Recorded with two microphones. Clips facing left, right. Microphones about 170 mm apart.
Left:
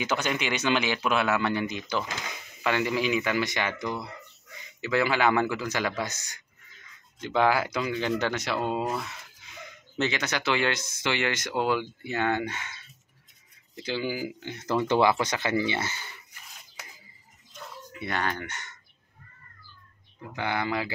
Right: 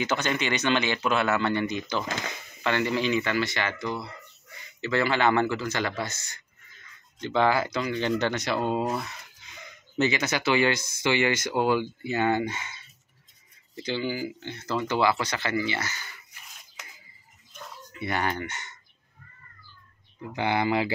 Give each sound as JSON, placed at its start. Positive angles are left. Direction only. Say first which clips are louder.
{"t": 0.0, "sound": "speech", "louder": "right 1 dB", "side_deg": 10}
{"t": 13.8, "sound": "speech", "louder": "right 1 dB", "side_deg": 10}
{"t": 17.9, "sound": "speech", "louder": "right 2 dB", "side_deg": -5}
{"t": 20.3, "sound": "speech", "louder": "right 4 dB", "side_deg": -15}